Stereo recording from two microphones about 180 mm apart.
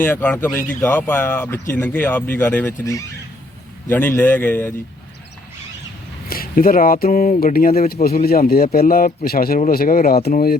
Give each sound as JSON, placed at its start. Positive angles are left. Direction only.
{"t": 0.0, "sound": "speech", "side_deg": 10}
{"t": 6.2, "sound": "a man's voice", "side_deg": 55}